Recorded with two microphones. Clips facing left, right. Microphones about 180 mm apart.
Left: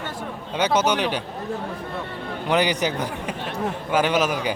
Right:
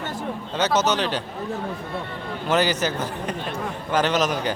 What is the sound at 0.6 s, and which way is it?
Speech, 10° left (ahead or behind).